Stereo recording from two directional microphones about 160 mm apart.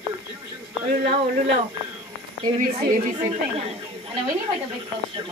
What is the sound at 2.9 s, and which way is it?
Speech, 45° right (ahead or behind).